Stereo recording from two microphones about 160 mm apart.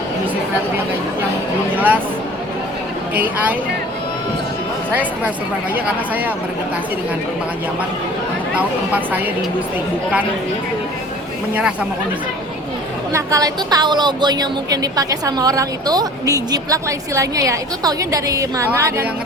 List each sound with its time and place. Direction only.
1.7 s a woman's voice: 10° right (ahead or behind)
3.2 s a woman's voice: 10° right (ahead or behind)
8.5 s a woman's voice: 10° right (ahead or behind)
11.5 s a woman's voice: 10° right (ahead or behind)
13.1 s a woman's voice: 20° right (ahead or behind)